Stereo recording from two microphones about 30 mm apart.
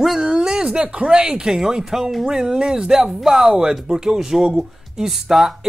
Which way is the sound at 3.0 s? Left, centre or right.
Centre.